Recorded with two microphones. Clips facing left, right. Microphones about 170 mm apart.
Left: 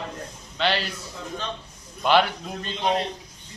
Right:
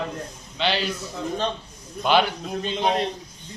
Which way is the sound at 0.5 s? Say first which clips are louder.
Even; centre (ahead or behind).